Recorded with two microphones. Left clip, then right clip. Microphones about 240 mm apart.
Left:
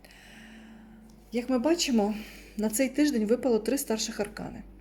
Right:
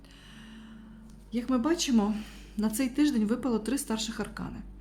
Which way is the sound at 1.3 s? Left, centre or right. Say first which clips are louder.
Left 2 dB; centre.